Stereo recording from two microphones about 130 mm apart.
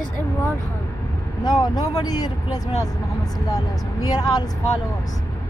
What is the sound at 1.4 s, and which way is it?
Speech, 30° left (ahead or behind).